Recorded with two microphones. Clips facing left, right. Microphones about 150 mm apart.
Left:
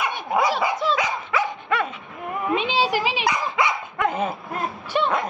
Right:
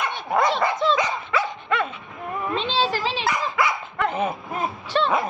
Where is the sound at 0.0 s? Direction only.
10° left (ahead or behind).